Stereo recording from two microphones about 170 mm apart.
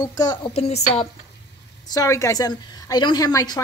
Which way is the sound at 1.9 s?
20° left (ahead or behind).